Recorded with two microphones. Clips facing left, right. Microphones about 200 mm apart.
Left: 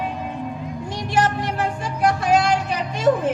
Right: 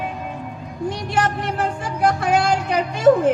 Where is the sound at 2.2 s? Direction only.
60° right (ahead or behind).